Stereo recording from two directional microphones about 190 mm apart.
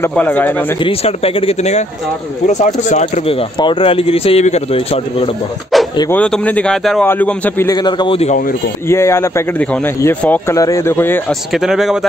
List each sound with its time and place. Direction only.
0.0 s speech: 10° left (ahead or behind)
0.7 s speech: 30° left (ahead or behind)
5.9 s speech: 10° left (ahead or behind); by 8.4 s 30° left (ahead or behind)
8.8 s speech: 15° left (ahead or behind)
11.5 s speech: centre (ahead or behind)